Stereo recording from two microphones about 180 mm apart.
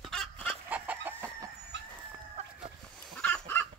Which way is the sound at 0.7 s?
10° right (ahead or behind).